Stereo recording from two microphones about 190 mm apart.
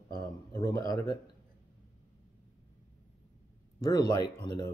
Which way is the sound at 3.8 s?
20° left (ahead or behind).